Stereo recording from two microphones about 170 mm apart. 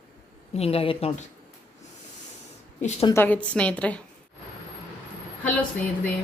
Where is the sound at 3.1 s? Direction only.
10° left (ahead or behind).